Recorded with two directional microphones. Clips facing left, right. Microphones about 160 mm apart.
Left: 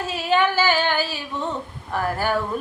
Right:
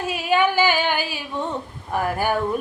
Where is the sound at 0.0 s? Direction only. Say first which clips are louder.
Right 1 dB; 10° right (ahead or behind).